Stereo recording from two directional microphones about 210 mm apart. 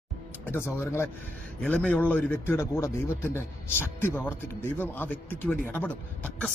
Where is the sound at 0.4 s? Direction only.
10° left (ahead or behind).